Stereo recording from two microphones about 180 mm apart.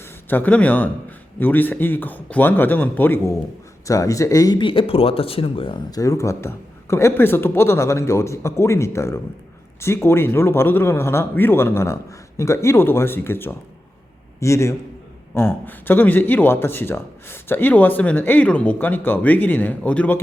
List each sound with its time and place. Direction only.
0.3 s speech: 10° left (ahead or behind)